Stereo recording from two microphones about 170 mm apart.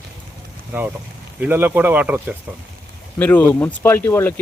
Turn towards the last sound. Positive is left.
turn(degrees=15)  # may be behind; listen again after turning